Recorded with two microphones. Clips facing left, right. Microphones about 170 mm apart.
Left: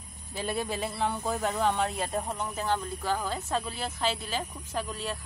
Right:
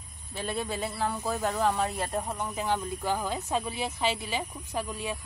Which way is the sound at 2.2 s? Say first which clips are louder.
Even; 10° right (ahead or behind).